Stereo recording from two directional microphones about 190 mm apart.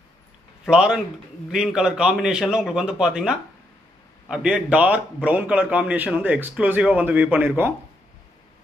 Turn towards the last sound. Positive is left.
turn(degrees=-10)  # may be behind; listen again after turning